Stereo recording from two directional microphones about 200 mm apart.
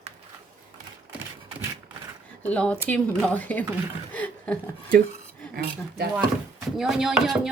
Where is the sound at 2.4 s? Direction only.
5° left (ahead or behind).